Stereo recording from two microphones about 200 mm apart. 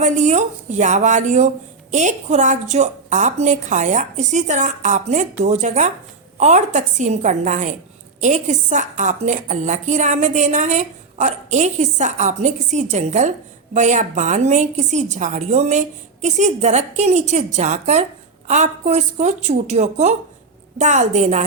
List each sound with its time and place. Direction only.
0.0 s a woman's voice: 35° right (ahead or behind)